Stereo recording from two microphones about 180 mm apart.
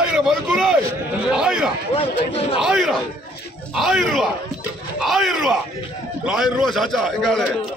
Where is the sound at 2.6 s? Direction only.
Centre (ahead or behind).